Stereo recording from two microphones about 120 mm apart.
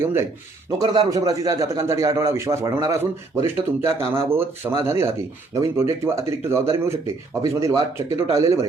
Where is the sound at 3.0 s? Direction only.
20° right (ahead or behind).